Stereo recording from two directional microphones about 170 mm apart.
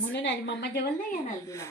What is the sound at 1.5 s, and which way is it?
Speech, 15° left (ahead or behind).